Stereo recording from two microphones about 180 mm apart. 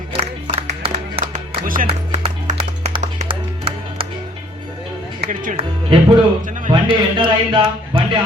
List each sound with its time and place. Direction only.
0.2 s music: 35° right (ahead or behind)
1.2 s music: 45° right (ahead or behind)
2.2 s music: 35° right (ahead or behind)
5.2 s speech: 50° right (ahead or behind)
5.5 s speech: 25° right (ahead or behind)